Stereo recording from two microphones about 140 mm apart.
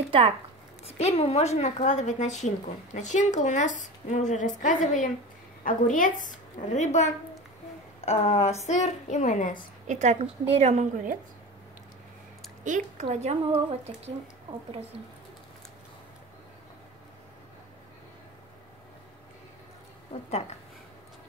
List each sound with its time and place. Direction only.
0.8 s a woman's voice: 50° left (ahead or behind); by 9.6 s 65° left (ahead or behind)
9.8 s a woman's voice: 55° right (ahead or behind)
12.6 s a woman's voice: 65° right (ahead or behind)
13.1 s speech: 50° right (ahead or behind)
20.2 s a woman's voice: 50° left (ahead or behind)